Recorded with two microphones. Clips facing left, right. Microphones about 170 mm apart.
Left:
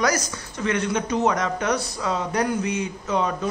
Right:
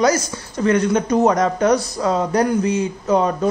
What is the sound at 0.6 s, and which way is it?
Speech, 40° right (ahead or behind).